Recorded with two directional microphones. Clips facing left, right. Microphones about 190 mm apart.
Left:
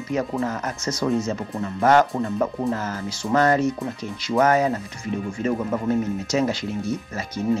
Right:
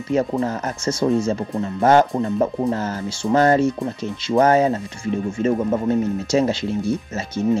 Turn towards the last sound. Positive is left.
turn(degrees=-25)  # may be behind; listen again after turning